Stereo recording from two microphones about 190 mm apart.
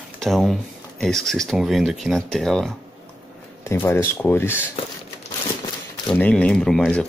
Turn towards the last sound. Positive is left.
turn(degrees=0)  # may be behind; listen again after turning